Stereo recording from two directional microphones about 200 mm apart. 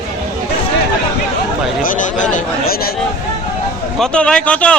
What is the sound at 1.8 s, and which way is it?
Speech, 40° left (ahead or behind).